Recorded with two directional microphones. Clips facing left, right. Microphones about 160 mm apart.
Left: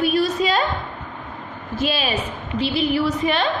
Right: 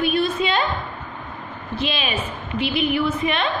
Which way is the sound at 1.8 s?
40° left (ahead or behind).